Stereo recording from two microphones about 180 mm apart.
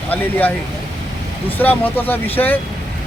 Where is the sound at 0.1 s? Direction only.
10° left (ahead or behind).